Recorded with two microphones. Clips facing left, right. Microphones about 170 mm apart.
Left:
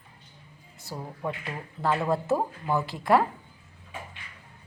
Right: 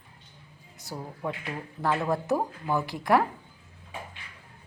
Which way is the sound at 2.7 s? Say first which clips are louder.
Left 1 dB; 15° right (ahead or behind).